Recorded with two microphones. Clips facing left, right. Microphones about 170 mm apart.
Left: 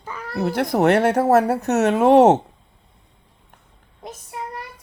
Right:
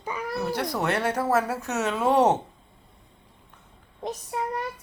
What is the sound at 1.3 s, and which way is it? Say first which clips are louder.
A woman's voice: left 8 dB; 65° left (ahead or behind).